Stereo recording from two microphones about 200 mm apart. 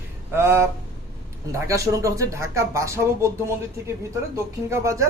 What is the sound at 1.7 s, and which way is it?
Speech, 15° right (ahead or behind).